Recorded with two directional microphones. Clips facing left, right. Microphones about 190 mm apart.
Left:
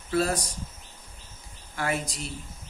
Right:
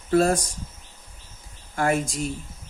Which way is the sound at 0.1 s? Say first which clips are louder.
Right 6 dB; 45° right (ahead or behind).